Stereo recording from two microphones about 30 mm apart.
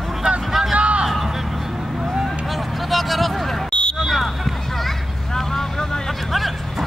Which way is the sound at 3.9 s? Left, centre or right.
Centre.